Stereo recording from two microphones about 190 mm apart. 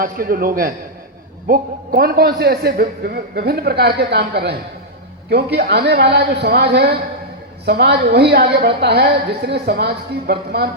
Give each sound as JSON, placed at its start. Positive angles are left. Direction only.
{"t": 0.0, "sound": "a man's voice", "side_deg": -50}